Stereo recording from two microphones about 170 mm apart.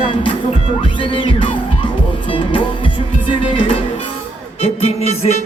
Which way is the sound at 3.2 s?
30° left (ahead or behind).